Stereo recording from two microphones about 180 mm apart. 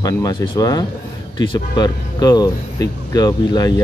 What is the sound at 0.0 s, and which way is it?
Speech, 20° left (ahead or behind).